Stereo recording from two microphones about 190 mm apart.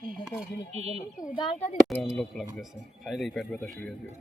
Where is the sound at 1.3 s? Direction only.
25° left (ahead or behind).